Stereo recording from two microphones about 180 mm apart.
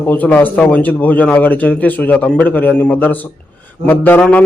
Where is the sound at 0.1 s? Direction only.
10° left (ahead or behind).